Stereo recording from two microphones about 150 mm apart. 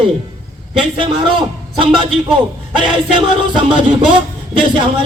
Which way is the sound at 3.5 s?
35° right (ahead or behind).